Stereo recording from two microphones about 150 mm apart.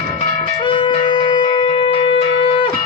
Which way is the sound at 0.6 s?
30° left (ahead or behind).